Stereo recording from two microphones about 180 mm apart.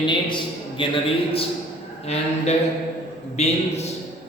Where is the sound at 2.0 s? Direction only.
35° left (ahead or behind).